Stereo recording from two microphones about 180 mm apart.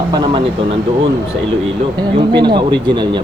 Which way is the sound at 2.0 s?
25° right (ahead or behind).